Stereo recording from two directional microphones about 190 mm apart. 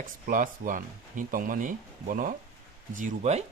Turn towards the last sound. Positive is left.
turn(degrees=-40)  # may be behind; listen again after turning